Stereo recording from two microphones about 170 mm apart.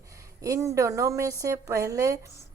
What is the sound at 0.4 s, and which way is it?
Speech, 20° right (ahead or behind).